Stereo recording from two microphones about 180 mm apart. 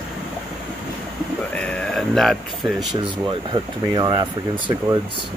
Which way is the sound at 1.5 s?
5° left (ahead or behind).